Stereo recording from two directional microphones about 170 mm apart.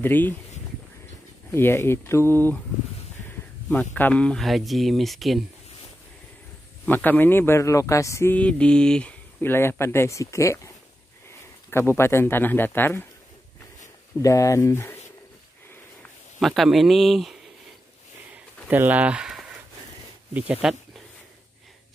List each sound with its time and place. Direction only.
0.0 s speech: 10° left (ahead or behind)
1.5 s speech: 15° left (ahead or behind)
3.6 s speech: 5° left (ahead or behind)
6.9 s speech: 10° left (ahead or behind)
11.7 s speech: 15° left (ahead or behind)
14.2 s speech: 20° left (ahead or behind)
16.3 s speech: centre (ahead or behind)
18.3 s a sound: 10° right (ahead or behind)
20.3 s speech: 10° right (ahead or behind)